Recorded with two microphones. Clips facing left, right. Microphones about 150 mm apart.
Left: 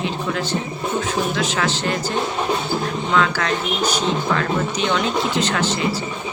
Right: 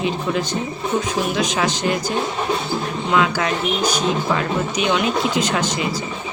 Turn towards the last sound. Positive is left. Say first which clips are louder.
# right 1 dB
turn(degrees=-10)  # may be behind; listen again after turning